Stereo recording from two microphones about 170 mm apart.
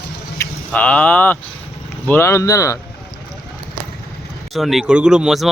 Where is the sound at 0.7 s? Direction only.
10° left (ahead or behind).